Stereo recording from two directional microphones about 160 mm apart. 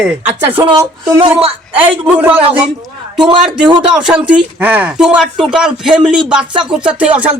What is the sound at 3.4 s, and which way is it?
Speech, 5° right (ahead or behind).